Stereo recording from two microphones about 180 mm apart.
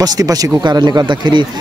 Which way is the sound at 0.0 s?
20° right (ahead or behind).